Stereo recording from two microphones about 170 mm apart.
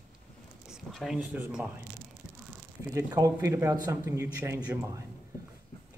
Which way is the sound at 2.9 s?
20° right (ahead or behind).